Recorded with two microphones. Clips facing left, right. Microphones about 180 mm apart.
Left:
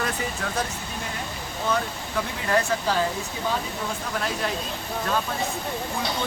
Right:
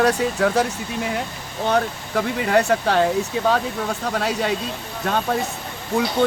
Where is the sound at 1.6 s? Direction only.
70° right (ahead or behind).